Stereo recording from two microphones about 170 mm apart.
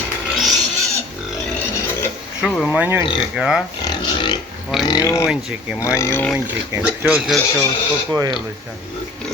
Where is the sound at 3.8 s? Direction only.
25° left (ahead or behind).